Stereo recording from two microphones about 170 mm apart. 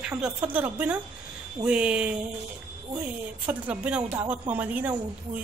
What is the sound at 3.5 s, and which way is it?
Speech, 10° right (ahead or behind).